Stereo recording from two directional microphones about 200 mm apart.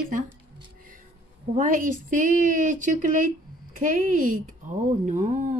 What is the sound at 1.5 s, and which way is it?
Speech, 40° right (ahead or behind).